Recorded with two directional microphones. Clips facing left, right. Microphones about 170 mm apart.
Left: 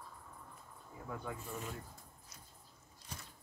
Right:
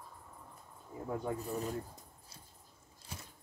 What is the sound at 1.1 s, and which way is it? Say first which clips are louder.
Speech: right 7 dB; 30° right (ahead or behind).